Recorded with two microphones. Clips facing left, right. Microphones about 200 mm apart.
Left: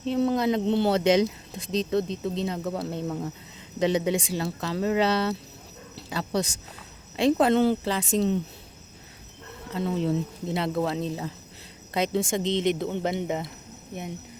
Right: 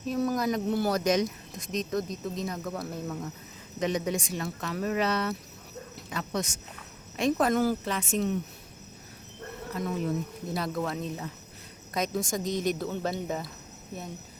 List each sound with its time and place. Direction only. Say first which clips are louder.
0.0 s speech: left 4 dB; 25° left (ahead or behind)
9.7 s speech: left 4 dB; 30° left (ahead or behind)